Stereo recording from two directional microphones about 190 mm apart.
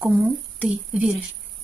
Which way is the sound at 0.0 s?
5° right (ahead or behind).